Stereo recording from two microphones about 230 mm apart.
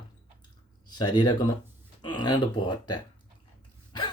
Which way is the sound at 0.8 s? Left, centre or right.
Centre.